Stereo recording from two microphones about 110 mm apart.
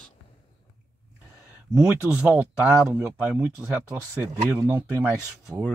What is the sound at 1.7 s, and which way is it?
Speech, 10° right (ahead or behind).